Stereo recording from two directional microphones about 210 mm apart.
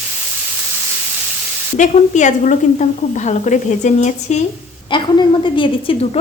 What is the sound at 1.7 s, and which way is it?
Speech, 35° left (ahead or behind).